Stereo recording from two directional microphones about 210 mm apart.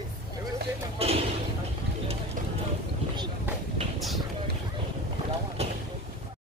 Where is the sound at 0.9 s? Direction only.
30° right (ahead or behind).